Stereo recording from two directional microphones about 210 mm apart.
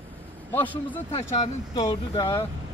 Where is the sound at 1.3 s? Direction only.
25° left (ahead or behind).